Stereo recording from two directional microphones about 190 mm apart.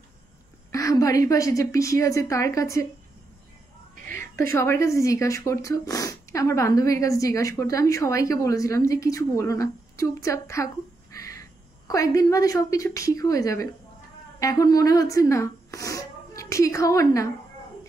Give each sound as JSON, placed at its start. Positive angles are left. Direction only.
{"t": 0.7, "sound": "speech", "side_deg": 15}
{"t": 4.1, "sound": "speech", "side_deg": 15}